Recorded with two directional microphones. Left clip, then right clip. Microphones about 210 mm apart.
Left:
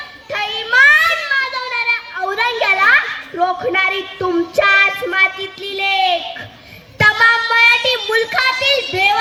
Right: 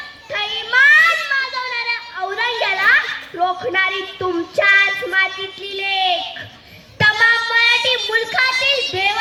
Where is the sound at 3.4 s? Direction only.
40° left (ahead or behind).